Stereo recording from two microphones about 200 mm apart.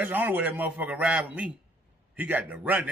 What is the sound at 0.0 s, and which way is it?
Speech, 10° right (ahead or behind).